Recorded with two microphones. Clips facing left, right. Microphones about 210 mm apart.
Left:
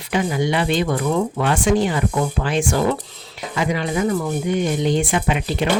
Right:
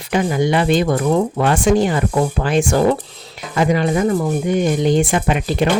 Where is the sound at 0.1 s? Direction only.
45° right (ahead or behind).